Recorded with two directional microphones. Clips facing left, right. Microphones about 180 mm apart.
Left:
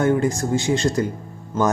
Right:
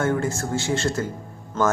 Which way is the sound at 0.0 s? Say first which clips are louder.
Left 4 dB; 15° left (ahead or behind).